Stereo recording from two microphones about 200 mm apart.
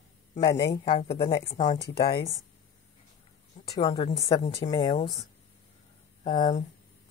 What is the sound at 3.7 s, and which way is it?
Speech, 25° left (ahead or behind).